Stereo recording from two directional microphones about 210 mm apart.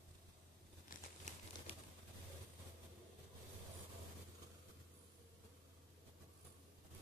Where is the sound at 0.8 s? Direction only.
35° left (ahead or behind).